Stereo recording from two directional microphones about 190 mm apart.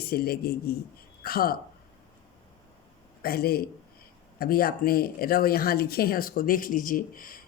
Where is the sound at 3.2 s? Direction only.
55° left (ahead or behind).